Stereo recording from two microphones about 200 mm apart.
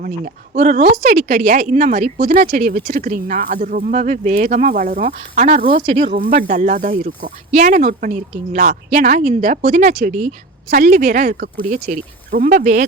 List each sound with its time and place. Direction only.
0.6 s speech: 35° right (ahead or behind)
5.8 s speech: 30° right (ahead or behind)
6.5 s speech: 40° right (ahead or behind)